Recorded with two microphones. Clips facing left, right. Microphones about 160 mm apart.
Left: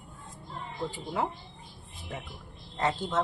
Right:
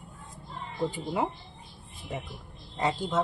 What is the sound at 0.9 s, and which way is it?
Speech, 15° right (ahead or behind).